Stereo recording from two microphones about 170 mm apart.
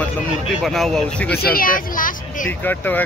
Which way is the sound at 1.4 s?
55° left (ahead or behind).